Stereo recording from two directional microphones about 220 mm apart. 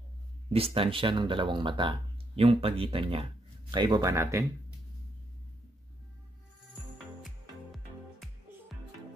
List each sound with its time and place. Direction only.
0.5 s speech: 25° right (ahead or behind); by 4.7 s 10° right (ahead or behind)
7.2 s music: centre (ahead or behind)